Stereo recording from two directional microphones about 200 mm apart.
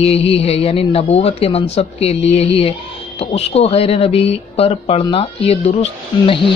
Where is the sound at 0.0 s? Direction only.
30° left (ahead or behind).